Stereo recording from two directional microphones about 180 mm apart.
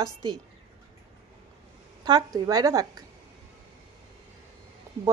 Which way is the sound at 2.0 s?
20° right (ahead or behind).